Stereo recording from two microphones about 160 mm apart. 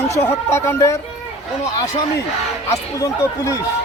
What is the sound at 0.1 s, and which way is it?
Speech, 15° left (ahead or behind).